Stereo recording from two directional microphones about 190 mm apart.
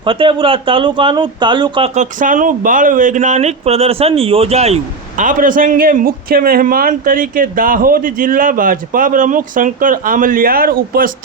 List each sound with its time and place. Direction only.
0.0 s speech: 25° right (ahead or behind)
2.0 s speech: 45° right (ahead or behind)